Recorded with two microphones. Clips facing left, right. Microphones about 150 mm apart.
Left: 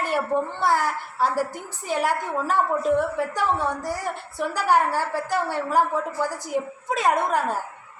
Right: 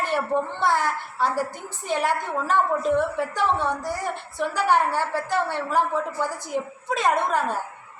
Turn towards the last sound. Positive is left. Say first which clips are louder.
# left 1 dB
turn(degrees=10)  # may be behind; listen again after turning